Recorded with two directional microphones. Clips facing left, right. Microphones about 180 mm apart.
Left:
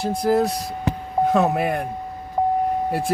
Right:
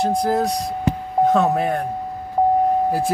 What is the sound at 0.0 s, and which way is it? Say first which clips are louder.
Speech: even; 5° left (ahead or behind).